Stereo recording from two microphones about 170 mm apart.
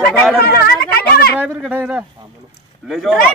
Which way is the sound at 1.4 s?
10° right (ahead or behind).